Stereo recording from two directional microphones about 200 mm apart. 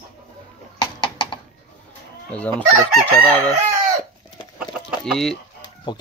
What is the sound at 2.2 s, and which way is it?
Speech, 5° left (ahead or behind).